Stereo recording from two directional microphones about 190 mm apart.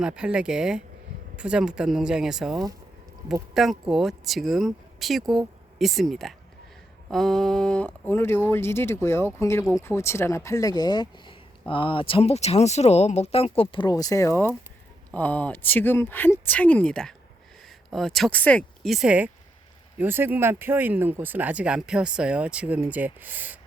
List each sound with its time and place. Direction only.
0.0 s speech: 5° right (ahead or behind)